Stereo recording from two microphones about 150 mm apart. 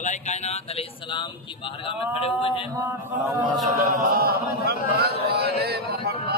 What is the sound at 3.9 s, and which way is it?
Speech, 75° right (ahead or behind).